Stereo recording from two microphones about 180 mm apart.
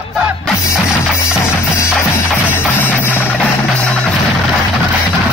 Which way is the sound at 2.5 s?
10° left (ahead or behind).